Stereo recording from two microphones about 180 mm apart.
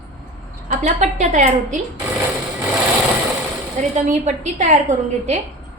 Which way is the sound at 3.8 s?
40° right (ahead or behind).